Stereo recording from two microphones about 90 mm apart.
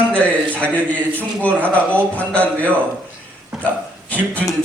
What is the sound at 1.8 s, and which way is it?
Speech, 15° left (ahead or behind).